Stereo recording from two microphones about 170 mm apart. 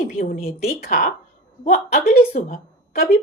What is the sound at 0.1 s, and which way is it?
A woman's voice, 55° left (ahead or behind).